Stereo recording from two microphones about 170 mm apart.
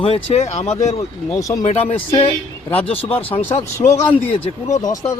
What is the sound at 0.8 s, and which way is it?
Speech, 20° left (ahead or behind).